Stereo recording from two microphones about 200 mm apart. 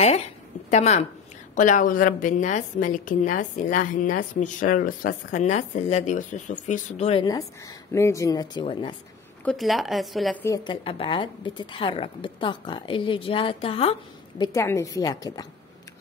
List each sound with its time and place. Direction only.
0.7 s a woman's voice: 35° left (ahead or behind)
9.4 s speech: centre (ahead or behind)
10.7 s speech: 25° left (ahead or behind)
14.4 s speech: 15° left (ahead or behind)